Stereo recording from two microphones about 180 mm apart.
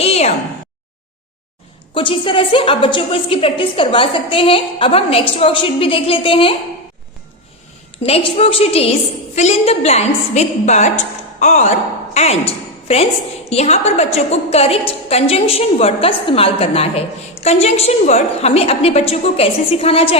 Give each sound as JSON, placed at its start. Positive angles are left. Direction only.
{"t": 0.0, "sound": "a sound", "side_deg": 35}
{"t": 2.0, "sound": "a woman's voice", "side_deg": 30}
{"t": 8.0, "sound": "a woman's voice", "side_deg": 35}